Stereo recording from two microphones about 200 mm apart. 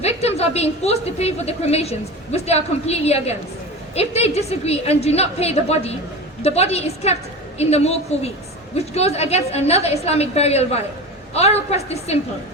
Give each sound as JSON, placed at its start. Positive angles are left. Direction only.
{"t": 0.0, "sound": "a woman's voice", "side_deg": 30}